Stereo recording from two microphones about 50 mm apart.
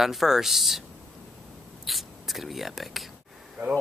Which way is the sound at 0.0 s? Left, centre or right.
Centre.